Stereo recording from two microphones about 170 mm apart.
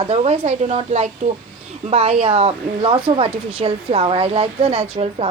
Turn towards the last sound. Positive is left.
turn(degrees=-35)  # may be behind; listen again after turning